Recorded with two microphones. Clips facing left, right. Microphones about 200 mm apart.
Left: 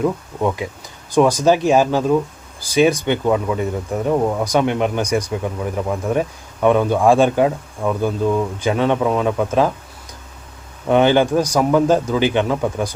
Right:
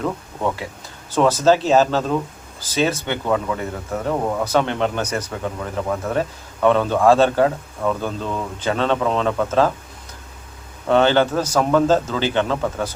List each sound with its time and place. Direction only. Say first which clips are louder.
0.0 s speech: left 4 dB; 15° left (ahead or behind)
10.8 s speech: left 2 dB; 15° left (ahead or behind)